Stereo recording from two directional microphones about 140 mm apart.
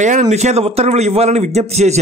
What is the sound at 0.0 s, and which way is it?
A man's voice, 60° right (ahead or behind).